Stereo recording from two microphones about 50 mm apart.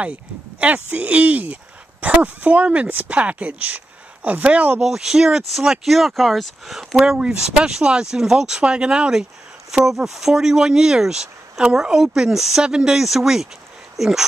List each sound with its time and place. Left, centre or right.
0.0 s speech: right
4.8 s speech: centre